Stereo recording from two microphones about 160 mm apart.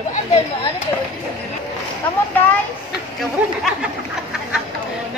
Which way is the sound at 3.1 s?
Centre (ahead or behind).